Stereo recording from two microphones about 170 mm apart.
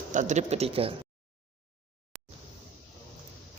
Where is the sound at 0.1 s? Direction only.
45° right (ahead or behind).